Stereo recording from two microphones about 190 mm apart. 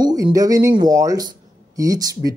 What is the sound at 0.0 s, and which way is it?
Speech, 20° right (ahead or behind).